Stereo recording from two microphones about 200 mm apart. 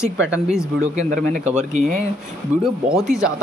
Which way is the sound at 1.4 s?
35° right (ahead or behind).